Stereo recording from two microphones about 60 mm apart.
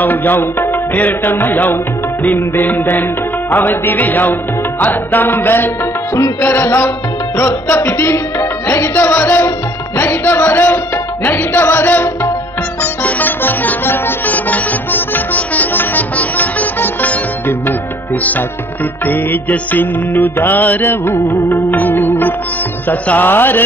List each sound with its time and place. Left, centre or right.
0.0 s music: left
19.0 s music: left